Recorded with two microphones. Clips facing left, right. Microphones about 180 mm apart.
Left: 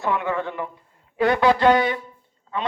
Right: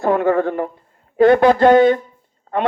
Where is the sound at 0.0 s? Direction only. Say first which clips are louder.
Right 9 dB; 45° right (ahead or behind).